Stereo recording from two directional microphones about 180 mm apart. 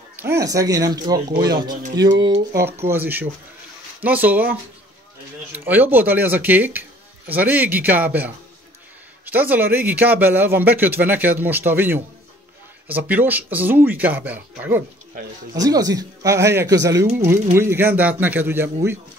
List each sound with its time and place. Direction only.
0.1 s speech: 15° right (ahead or behind)
2.5 s speech: 15° right (ahead or behind)
15.5 s speech: 20° right (ahead or behind)